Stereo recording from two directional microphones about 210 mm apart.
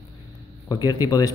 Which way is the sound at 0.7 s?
20° left (ahead or behind).